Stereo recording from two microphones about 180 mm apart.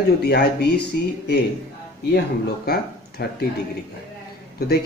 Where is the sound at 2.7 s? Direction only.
60° left (ahead or behind).